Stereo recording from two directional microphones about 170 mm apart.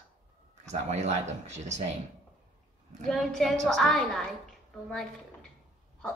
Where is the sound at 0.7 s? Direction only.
40° right (ahead or behind).